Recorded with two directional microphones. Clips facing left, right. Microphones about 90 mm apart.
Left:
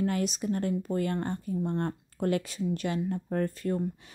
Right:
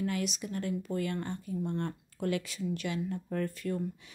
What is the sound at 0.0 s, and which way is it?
Speech, 40° left (ahead or behind).